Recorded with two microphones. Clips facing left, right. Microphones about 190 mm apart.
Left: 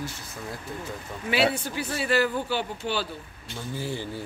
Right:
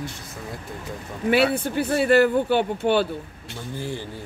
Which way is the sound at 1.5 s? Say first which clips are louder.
Right 8 dB; 55° right (ahead or behind).